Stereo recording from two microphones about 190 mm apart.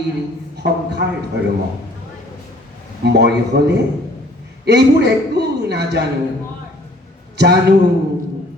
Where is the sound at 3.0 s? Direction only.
60° right (ahead or behind).